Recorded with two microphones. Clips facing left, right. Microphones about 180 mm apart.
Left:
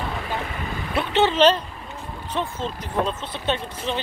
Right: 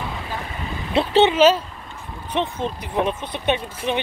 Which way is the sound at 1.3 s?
5° right (ahead or behind).